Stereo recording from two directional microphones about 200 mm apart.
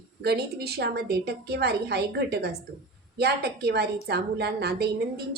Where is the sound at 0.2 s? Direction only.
55° right (ahead or behind).